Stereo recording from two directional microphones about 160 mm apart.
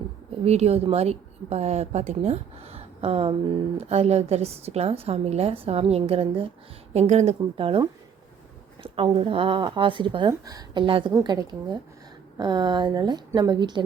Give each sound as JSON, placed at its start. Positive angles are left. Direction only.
{"t": 0.4, "sound": "a woman's voice", "side_deg": -40}
{"t": 6.9, "sound": "a woman's voice", "side_deg": -45}